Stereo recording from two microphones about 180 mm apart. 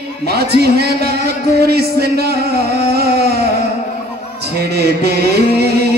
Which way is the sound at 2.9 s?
60° right (ahead or behind).